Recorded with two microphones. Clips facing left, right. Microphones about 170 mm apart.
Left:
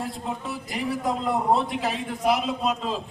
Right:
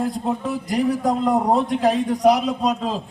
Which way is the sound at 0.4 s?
45° right (ahead or behind).